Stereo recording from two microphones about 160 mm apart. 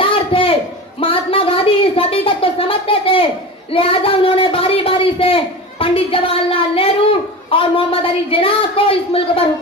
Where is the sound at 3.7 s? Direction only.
35° left (ahead or behind).